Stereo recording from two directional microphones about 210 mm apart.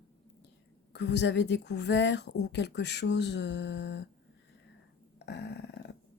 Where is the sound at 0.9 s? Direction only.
55° left (ahead or behind).